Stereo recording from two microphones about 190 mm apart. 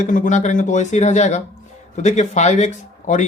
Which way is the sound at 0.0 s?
45° left (ahead or behind).